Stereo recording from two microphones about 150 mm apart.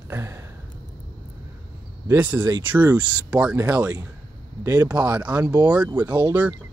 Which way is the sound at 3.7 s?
20° right (ahead or behind).